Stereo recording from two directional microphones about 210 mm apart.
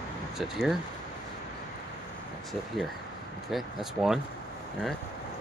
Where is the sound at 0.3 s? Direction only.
Centre (ahead or behind).